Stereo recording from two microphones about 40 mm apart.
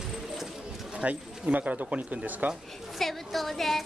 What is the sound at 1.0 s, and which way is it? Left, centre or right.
Speech, right.